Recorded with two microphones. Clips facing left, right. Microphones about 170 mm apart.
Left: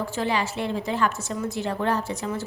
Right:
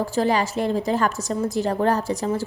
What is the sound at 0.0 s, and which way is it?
A woman's voice, 40° right (ahead or behind).